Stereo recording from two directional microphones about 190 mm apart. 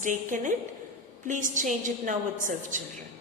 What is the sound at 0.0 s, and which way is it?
A woman's voice, 40° right (ahead or behind).